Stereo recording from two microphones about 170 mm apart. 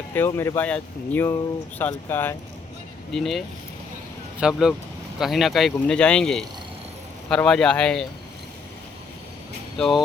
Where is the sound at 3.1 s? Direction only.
Centre (ahead or behind).